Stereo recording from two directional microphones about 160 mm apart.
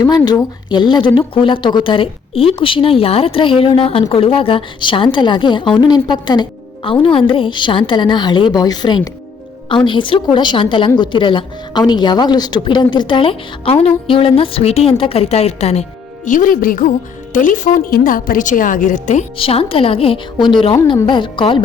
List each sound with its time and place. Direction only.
0.3 s a woman's voice: 25° left (ahead or behind); by 19.2 s 50° left (ahead or behind)
19.4 s a woman's voice: 35° left (ahead or behind)
20.8 s music: 30° left (ahead or behind)